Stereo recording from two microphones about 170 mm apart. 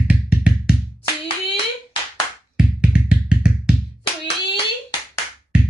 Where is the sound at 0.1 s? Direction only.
5° right (ahead or behind).